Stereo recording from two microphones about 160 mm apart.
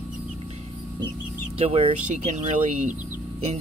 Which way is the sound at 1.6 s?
35° right (ahead or behind).